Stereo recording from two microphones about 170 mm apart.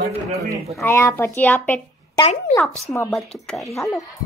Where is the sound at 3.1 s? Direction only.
Centre (ahead or behind).